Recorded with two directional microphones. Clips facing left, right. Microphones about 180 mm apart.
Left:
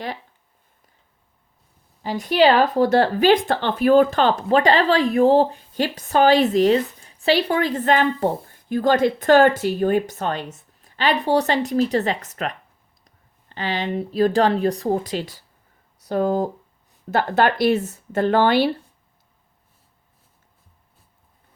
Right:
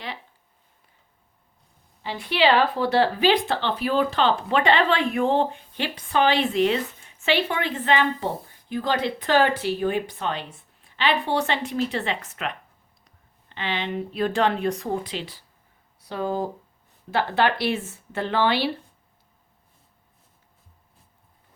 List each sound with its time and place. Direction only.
2.0 s speech: 40° left (ahead or behind)